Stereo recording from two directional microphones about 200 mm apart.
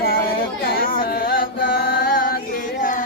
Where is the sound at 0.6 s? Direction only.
45° left (ahead or behind).